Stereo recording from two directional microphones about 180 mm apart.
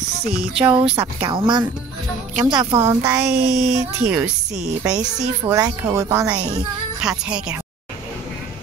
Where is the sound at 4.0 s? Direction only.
5° right (ahead or behind).